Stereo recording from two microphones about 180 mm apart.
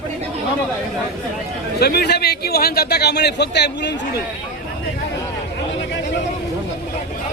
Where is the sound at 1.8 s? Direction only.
60° left (ahead or behind).